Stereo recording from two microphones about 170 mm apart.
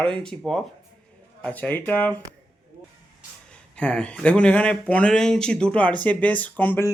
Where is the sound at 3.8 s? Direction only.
5° left (ahead or behind).